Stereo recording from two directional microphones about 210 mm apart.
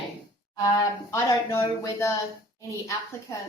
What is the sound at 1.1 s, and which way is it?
A woman's voice, 15° left (ahead or behind).